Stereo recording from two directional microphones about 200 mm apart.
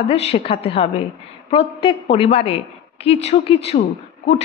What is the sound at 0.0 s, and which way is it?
A woman's voice, 30° left (ahead or behind).